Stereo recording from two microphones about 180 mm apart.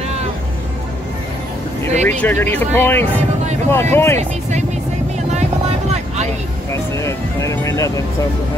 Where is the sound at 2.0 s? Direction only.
10° left (ahead or behind).